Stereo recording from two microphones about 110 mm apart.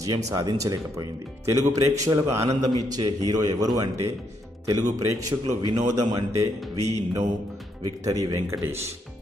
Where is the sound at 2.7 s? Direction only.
40° right (ahead or behind).